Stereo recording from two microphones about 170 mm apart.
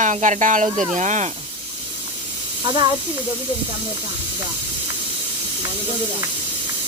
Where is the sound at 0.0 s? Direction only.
45° right (ahead or behind).